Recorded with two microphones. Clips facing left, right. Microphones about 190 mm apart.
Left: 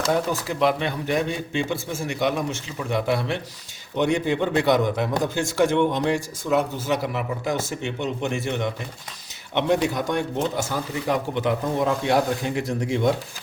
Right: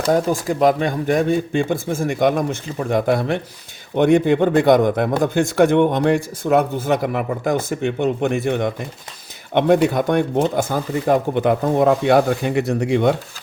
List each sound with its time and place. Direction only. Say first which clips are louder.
0.1 s speech: right 8 dB; 45° right (ahead or behind); by 13.1 s 65° right (ahead or behind)